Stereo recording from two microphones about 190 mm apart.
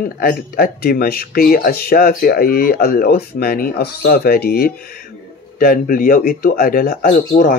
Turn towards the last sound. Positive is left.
turn(degrees=45)  # may be behind; listen again after turning